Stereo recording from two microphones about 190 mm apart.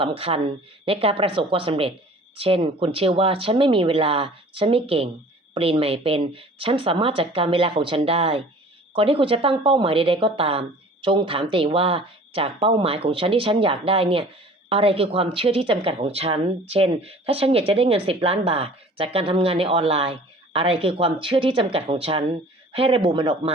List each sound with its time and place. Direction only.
0.0 s a woman's voice: 30° right (ahead or behind)